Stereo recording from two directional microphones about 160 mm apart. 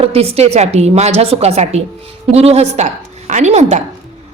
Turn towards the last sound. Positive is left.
turn(degrees=-45)  # may be behind; listen again after turning